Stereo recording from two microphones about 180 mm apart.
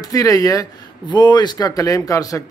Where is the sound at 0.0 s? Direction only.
20° left (ahead or behind).